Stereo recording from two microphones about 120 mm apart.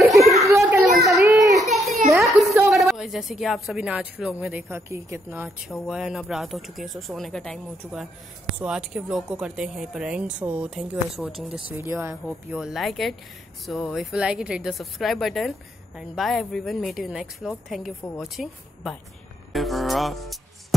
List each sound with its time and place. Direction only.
0.2 s children playing: centre (ahead or behind)
0.5 s children playing: 25° right (ahead or behind)
1.2 s child singing: 30° right (ahead or behind)
1.6 s a sound: centre (ahead or behind)
2.1 s a sound: 25° right (ahead or behind)
2.7 s speech: centre (ahead or behind); by 5.5 s 20° right (ahead or behind)
5.7 s speech: 5° right (ahead or behind)
8.5 s speech: 5° right (ahead or behind)
11.7 s speech: 20° right (ahead or behind)
12.5 s speech: centre (ahead or behind)
19.5 s speech: centre (ahead or behind)